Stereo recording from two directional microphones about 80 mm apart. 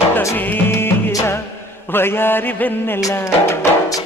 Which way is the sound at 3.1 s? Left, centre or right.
Left.